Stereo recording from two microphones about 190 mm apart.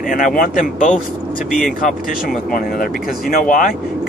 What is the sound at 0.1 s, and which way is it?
Speech, 50° left (ahead or behind).